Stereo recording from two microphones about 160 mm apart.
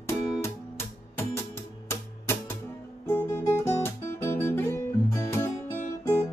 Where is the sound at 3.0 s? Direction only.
20° left (ahead or behind).